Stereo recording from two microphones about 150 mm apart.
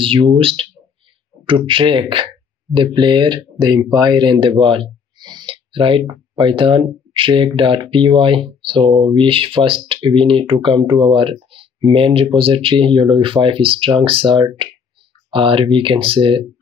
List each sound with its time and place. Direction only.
0.0 s speech: 35° right (ahead or behind)